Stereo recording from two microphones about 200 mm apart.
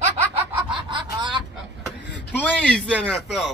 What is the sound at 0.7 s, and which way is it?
Snicker, 25° right (ahead or behind).